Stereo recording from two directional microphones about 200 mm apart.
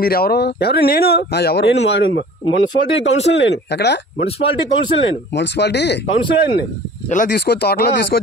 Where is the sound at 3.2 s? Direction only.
60° left (ahead or behind).